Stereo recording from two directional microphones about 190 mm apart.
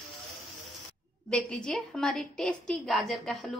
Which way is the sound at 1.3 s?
5° left (ahead or behind).